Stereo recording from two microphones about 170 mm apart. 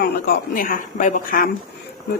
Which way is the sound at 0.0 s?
65° left (ahead or behind).